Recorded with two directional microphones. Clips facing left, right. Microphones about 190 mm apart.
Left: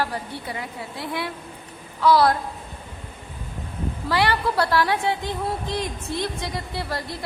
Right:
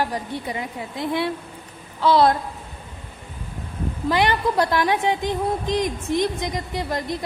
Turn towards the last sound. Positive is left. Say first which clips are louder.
# right 3 dB
turn(degrees=-20)  # may be behind; listen again after turning